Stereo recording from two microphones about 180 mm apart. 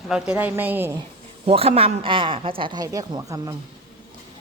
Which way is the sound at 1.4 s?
35° right (ahead or behind).